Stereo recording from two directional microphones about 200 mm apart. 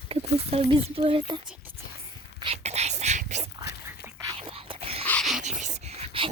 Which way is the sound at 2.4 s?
30° right (ahead or behind).